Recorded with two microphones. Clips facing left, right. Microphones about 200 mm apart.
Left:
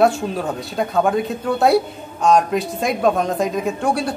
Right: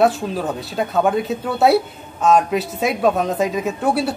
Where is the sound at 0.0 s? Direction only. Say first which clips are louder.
Even; centre (ahead or behind).